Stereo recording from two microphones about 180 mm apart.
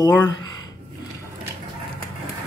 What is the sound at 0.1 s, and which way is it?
Speech, 20° left (ahead or behind).